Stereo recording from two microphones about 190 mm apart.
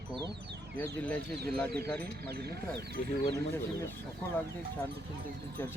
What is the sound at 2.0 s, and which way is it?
Speech, 55° right (ahead or behind).